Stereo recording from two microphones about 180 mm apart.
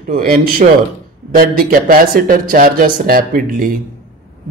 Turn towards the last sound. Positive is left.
turn(degrees=-55)  # may be behind; listen again after turning